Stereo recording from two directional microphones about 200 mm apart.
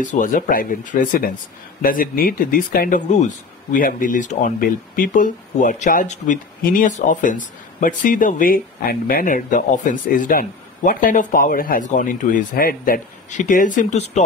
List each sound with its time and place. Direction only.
0.0 s speech: 40° left (ahead or behind)